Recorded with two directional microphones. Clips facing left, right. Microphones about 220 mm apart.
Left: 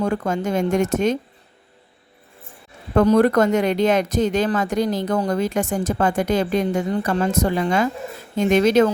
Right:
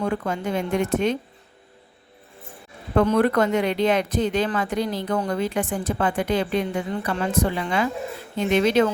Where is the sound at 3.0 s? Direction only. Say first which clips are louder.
Left 4 dB; 40° left (ahead or behind).